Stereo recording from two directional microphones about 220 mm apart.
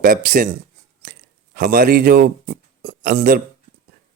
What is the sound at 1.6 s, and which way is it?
A man's voice, 40° right (ahead or behind).